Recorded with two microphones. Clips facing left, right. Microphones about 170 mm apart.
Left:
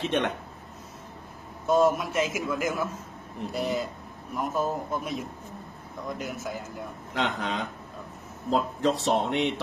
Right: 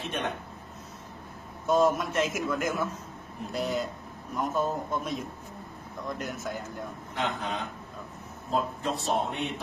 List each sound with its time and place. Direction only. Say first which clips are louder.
0.0 s a man's voice: left 6 dB; 90° left
1.7 s a man's voice: left 2 dB; centre (ahead or behind)
7.2 s a man's voice: left 3 dB; 85° left